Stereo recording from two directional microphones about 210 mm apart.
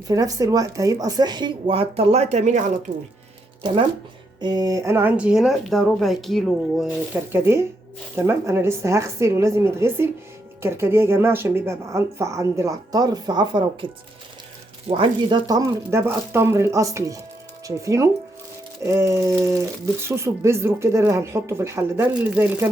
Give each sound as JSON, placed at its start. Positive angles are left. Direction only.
{"t": 0.1, "sound": "speech", "side_deg": -15}
{"t": 4.4, "sound": "speech", "side_deg": -20}